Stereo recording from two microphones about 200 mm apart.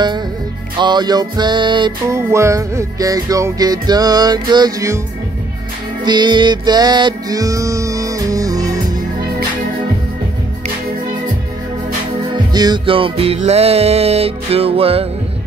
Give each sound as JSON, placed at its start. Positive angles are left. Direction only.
{"t": 0.7, "sound": "music", "side_deg": -20}
{"t": 6.0, "sound": "music", "side_deg": -20}
{"t": 12.5, "sound": "music", "side_deg": -20}